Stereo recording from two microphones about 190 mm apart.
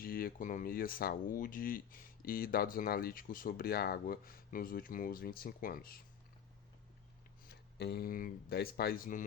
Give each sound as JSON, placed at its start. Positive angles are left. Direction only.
{"t": 0.0, "sound": "speech", "side_deg": 50}
{"t": 7.4, "sound": "speech", "side_deg": 55}